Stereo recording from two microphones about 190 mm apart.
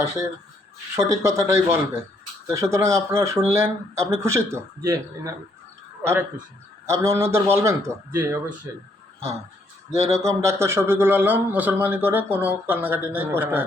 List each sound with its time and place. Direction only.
0.0 s a man's voice: 15° right (ahead or behind)
10.1 s a man's voice: 15° right (ahead or behind)